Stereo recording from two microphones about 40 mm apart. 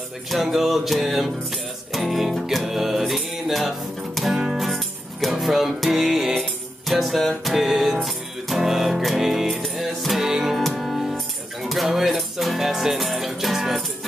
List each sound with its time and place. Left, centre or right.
0.3 s music: centre